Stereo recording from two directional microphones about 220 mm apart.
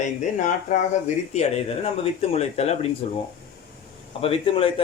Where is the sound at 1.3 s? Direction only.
25° left (ahead or behind).